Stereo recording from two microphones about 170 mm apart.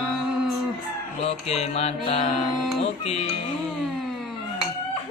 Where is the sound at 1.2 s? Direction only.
40° left (ahead or behind).